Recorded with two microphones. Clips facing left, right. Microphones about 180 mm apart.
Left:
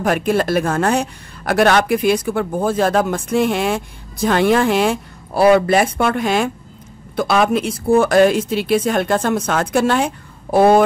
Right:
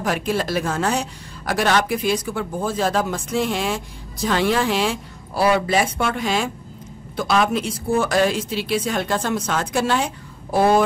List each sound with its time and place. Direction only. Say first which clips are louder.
0.0 s a woman's voice: left 5 dB; 55° left (ahead or behind)